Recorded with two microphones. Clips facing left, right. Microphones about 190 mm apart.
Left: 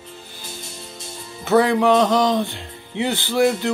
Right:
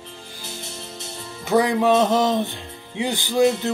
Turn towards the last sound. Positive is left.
turn(degrees=-20)  # may be behind; listen again after turning